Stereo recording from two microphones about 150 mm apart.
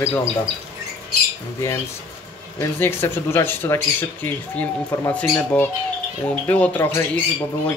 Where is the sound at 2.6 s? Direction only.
15° left (ahead or behind).